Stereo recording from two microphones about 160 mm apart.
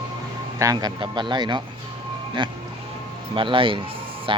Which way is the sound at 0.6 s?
25° right (ahead or behind).